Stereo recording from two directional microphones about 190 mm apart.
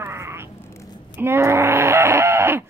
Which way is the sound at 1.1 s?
10° right (ahead or behind).